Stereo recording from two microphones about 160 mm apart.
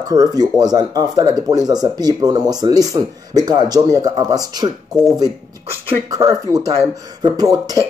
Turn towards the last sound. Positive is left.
turn(degrees=-25)  # may be behind; listen again after turning